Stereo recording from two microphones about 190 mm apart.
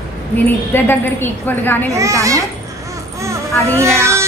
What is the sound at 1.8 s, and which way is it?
Speech, 15° right (ahead or behind).